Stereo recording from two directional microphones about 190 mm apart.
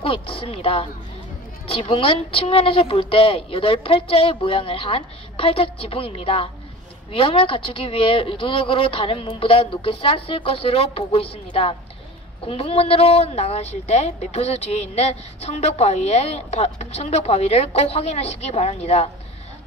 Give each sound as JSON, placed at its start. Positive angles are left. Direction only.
{"t": 0.0, "sound": "a woman's voice", "side_deg": 30}